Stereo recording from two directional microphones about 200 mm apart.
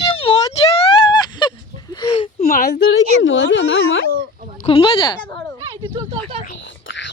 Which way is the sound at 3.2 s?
70° left (ahead or behind).